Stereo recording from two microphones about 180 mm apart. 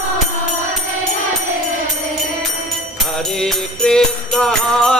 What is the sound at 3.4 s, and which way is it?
Music, centre (ahead or behind).